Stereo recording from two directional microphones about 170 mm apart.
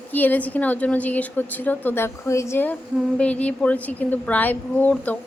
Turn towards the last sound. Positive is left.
turn(degrees=10)  # may be behind; listen again after turning